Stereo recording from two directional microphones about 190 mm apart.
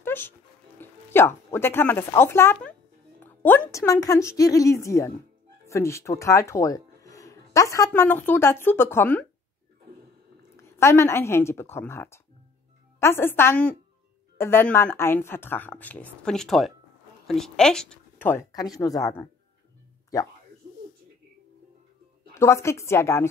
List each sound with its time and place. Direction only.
0.0 s dog: 10° left (ahead or behind)
0.7 s a woman's voice: 10° left (ahead or behind)
10.8 s a woman's voice: 15° left (ahead or behind)
22.3 s a woman's voice: 15° left (ahead or behind)